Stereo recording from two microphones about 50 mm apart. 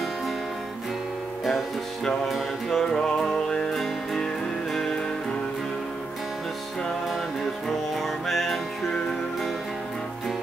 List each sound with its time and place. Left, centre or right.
2.2 s music: centre
7.6 s music: centre